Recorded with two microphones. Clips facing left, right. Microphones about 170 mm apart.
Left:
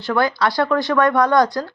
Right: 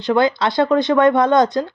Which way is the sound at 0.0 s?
20° right (ahead or behind).